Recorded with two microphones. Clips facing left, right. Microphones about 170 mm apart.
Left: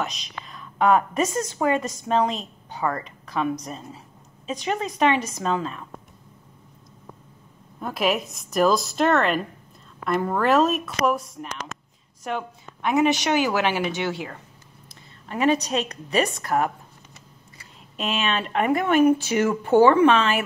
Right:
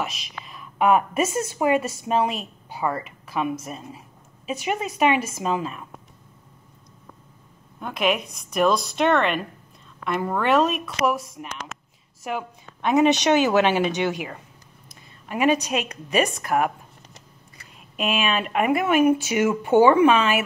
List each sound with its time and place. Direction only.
0.0 s a woman's voice: 5° right (ahead or behind)
7.8 s a woman's voice: 5° left (ahead or behind)
12.8 s a woman's voice: 20° right (ahead or behind)
17.9 s speech: 10° right (ahead or behind)